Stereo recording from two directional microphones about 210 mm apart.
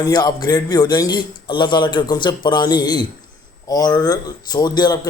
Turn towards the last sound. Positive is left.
turn(degrees=20)  # may be behind; listen again after turning